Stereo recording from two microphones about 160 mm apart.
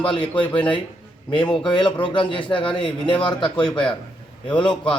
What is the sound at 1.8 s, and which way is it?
Speech, 5° left (ahead or behind).